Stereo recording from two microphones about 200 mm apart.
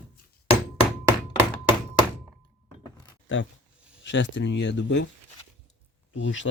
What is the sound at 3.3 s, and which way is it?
Speech, 70° left (ahead or behind).